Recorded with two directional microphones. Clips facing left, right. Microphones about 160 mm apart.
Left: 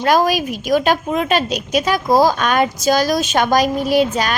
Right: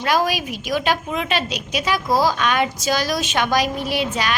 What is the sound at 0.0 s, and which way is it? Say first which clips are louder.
A woman's voice: left 5 dB; 45° left (ahead or behind).